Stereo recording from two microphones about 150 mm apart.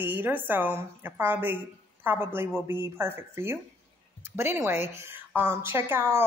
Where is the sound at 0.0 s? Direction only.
10° right (ahead or behind).